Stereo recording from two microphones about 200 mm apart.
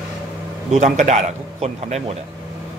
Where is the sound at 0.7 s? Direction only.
35° right (ahead or behind).